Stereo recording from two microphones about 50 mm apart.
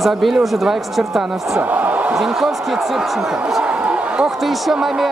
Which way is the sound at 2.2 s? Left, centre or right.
Centre.